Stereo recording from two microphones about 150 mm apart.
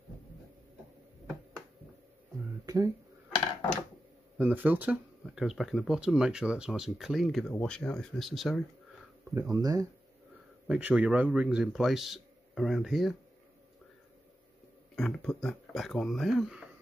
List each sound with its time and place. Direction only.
2.6 s a sound: 25° right (ahead or behind)
4.4 s speech: 10° right (ahead or behind)
9.3 s speech: 20° right (ahead or behind)
10.7 s speech: 10° right (ahead or behind)
15.0 s speech: 5° left (ahead or behind)